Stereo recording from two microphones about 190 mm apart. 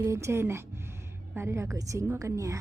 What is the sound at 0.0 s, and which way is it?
Speech, 15° right (ahead or behind).